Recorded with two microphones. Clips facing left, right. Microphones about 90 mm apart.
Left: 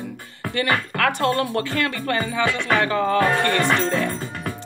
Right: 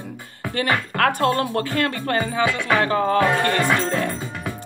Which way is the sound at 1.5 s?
45° right (ahead or behind).